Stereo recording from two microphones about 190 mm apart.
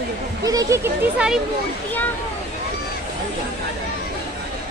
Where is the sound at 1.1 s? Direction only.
5° right (ahead or behind).